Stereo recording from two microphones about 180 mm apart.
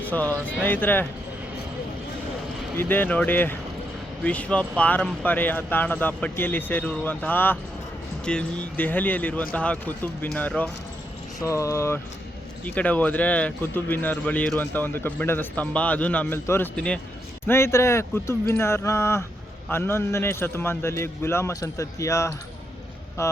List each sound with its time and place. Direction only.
0.0 s a man's voice: 10° left (ahead or behind)
2.7 s a man's voice: 10° left (ahead or behind)